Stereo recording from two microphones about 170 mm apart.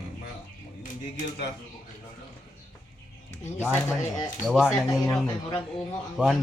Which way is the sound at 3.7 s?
15° left (ahead or behind).